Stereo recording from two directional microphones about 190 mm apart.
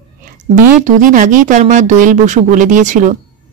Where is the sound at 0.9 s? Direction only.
45° right (ahead or behind).